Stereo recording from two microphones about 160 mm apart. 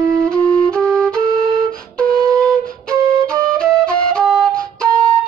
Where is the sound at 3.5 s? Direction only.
5° left (ahead or behind).